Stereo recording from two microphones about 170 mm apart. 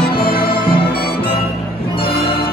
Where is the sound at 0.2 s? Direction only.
60° left (ahead or behind).